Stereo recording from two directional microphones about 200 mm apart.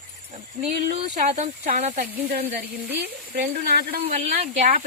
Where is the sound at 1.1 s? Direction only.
40° right (ahead or behind).